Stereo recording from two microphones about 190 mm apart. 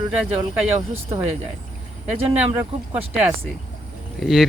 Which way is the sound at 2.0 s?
5° right (ahead or behind).